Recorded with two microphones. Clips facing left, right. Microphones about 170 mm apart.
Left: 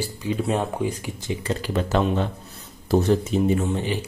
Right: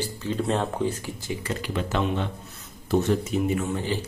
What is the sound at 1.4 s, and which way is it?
Speech, 35° left (ahead or behind).